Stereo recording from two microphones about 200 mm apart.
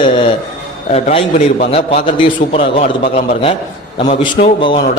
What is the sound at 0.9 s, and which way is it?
A man's voice, 30° left (ahead or behind).